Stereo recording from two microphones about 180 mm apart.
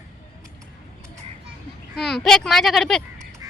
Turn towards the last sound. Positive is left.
turn(degrees=0)  # may be behind; listen again after turning